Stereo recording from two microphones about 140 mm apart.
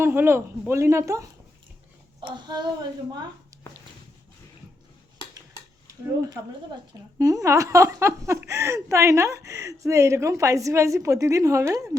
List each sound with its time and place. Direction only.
0.0 s a man's voice: 15° right (ahead or behind)
2.2 s child singing: 30° right (ahead or behind)
3.1 s speech: 30° right (ahead or behind)
7.2 s a woman's voice: 20° right (ahead or behind)